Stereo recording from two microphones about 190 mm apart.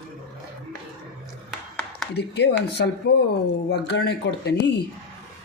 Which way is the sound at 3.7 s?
60° left (ahead or behind).